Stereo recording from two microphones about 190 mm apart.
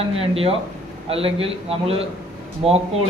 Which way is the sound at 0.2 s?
30° right (ahead or behind).